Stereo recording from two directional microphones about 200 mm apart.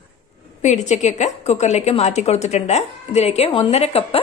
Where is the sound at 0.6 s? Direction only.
35° left (ahead or behind).